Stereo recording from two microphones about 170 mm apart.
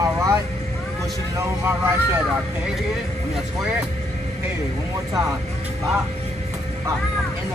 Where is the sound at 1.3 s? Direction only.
15° right (ahead or behind).